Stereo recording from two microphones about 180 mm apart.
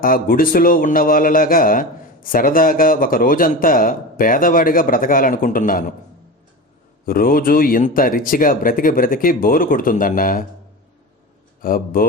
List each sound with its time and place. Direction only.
0.0 s a man's voice: 50° left (ahead or behind)
7.0 s a man's voice: 55° left (ahead or behind)
11.6 s a man's voice: 55° left (ahead or behind)